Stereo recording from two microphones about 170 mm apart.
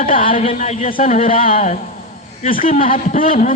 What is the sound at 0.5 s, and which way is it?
A man's voice, 45° left (ahead or behind).